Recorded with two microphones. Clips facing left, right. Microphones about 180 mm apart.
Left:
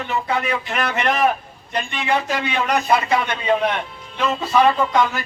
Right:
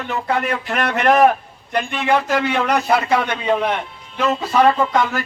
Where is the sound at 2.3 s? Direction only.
65° right (ahead or behind).